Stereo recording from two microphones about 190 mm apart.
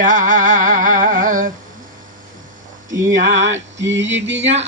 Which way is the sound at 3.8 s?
75° right (ahead or behind).